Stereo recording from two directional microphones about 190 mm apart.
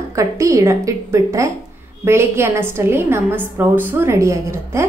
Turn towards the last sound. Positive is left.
turn(degrees=-15)  # may be behind; listen again after turning